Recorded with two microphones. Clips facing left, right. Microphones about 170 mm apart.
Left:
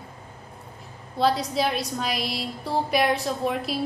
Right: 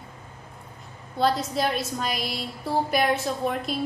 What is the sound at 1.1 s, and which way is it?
A woman's voice, centre (ahead or behind).